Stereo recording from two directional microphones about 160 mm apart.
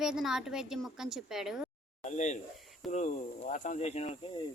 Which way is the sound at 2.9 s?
45° left (ahead or behind).